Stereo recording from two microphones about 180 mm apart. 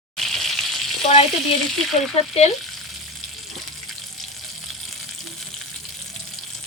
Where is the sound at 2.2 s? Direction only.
35° left (ahead or behind).